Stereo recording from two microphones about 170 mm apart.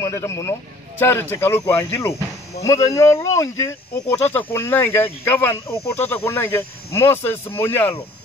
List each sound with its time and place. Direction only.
0.0 s speech: 15° left (ahead or behind)